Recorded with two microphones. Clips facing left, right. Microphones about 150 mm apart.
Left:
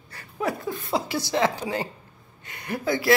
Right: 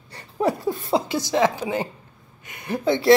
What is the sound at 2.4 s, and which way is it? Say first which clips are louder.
Speech: right 5 dB; 20° right (ahead or behind).